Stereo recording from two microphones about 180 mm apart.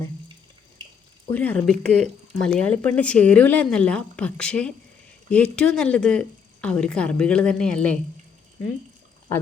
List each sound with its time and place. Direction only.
0.8 s water: 25° right (ahead or behind)
1.3 s a woman's voice: 10° left (ahead or behind)